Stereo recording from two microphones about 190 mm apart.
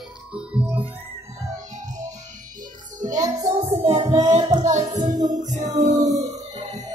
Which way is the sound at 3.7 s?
35° right (ahead or behind).